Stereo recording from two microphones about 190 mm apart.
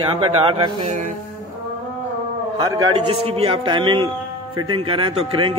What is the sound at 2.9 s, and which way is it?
Speech, 30° right (ahead or behind).